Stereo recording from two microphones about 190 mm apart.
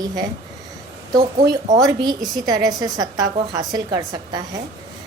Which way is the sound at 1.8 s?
20° right (ahead or behind).